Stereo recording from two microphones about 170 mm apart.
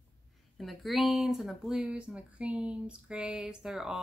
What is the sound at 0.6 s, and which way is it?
Speech, centre (ahead or behind).